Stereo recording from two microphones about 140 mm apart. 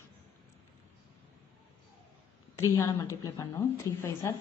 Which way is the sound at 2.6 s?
20° left (ahead or behind).